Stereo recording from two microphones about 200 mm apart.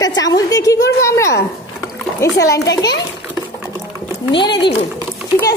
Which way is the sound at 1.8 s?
15° left (ahead or behind).